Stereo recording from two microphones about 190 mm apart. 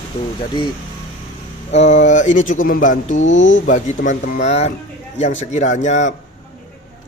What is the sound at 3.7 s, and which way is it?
A man's voice, 40° left (ahead or behind).